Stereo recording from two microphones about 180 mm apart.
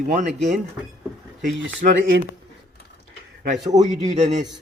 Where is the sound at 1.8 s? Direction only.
50° right (ahead or behind).